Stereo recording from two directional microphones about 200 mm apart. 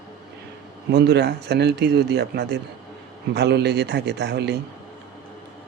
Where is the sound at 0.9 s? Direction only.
55° right (ahead or behind).